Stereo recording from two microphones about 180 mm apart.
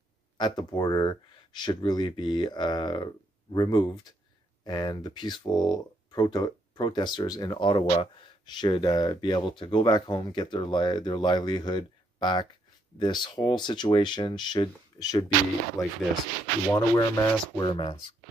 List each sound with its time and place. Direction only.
0.4 s speech: 25° left (ahead or behind)
15.8 s speech: centre (ahead or behind)
16.7 s speech: 15° left (ahead or behind)